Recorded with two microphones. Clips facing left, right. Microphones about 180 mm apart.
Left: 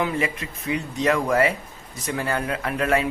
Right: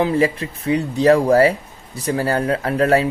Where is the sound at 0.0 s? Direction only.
35° right (ahead or behind).